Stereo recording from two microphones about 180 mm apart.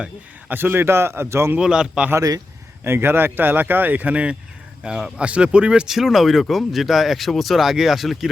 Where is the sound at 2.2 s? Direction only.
20° right (ahead or behind).